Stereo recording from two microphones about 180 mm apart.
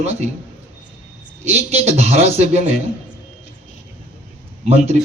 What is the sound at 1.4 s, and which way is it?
A man's voice, 35° right (ahead or behind).